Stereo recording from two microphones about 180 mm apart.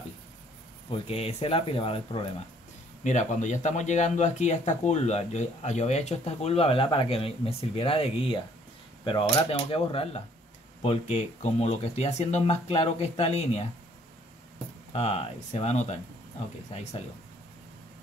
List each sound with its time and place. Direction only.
1.0 s speech: 30° left (ahead or behind)
3.0 s speech: 40° left (ahead or behind)
14.9 s speech: 35° left (ahead or behind)